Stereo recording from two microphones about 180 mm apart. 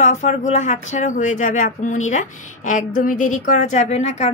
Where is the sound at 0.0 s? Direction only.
40° left (ahead or behind).